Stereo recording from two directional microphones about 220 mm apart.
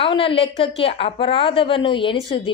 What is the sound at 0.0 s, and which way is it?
A woman's voice, 25° left (ahead or behind).